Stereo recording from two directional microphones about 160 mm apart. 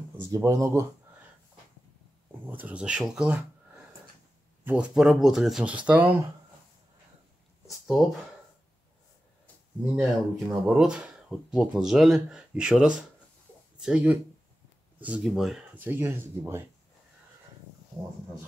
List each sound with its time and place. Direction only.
0.3 s speech: 20° right (ahead or behind)
2.4 s speech: 10° right (ahead or behind)
7.6 s speech: centre (ahead or behind)
10.3 s speech: centre (ahead or behind)